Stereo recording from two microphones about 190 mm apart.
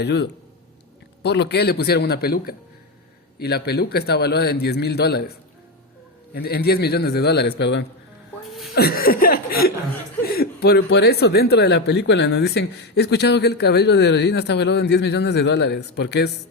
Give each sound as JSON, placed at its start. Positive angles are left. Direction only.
{"t": 0.0, "sound": "speech", "side_deg": 60}
{"t": 6.3, "sound": "speech", "side_deg": 55}
{"t": 8.7, "sound": "chuckle", "side_deg": 55}
{"t": 10.2, "sound": "speech", "side_deg": 55}